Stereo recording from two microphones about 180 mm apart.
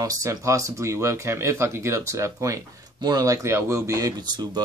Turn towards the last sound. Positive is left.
turn(degrees=-20)  # may be behind; listen again after turning